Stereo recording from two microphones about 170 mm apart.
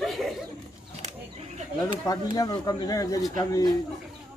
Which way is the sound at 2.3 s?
20° left (ahead or behind).